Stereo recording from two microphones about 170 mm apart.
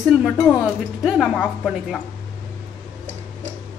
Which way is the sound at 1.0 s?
Centre (ahead or behind).